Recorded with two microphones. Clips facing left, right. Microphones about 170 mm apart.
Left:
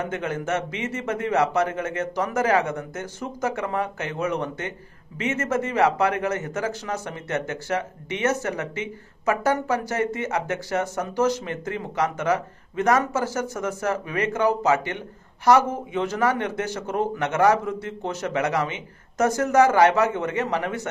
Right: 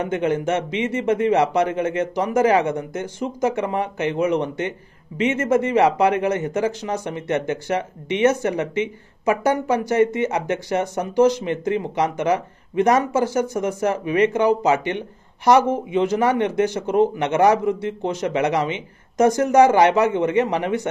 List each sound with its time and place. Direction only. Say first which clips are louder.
0.0 s speech: right 7 dB; 20° right (ahead or behind)